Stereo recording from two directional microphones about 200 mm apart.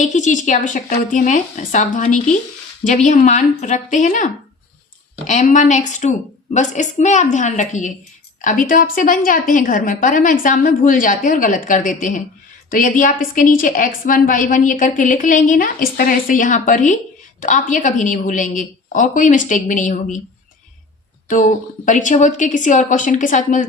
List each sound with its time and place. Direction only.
0.0 s a woman's voice: 40° left (ahead or behind)
21.2 s a woman's voice: 40° left (ahead or behind)